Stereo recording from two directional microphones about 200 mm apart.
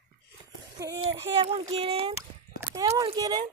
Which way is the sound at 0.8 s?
15° right (ahead or behind).